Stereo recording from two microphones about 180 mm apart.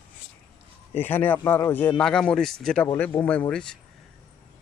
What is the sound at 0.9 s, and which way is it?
A man's voice, 10° left (ahead or behind).